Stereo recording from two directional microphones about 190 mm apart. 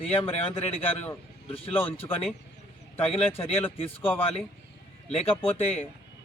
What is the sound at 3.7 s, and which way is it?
Speech, 30° left (ahead or behind).